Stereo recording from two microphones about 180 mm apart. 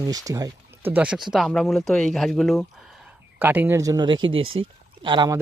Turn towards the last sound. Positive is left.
turn(degrees=-25)  # may be behind; listen again after turning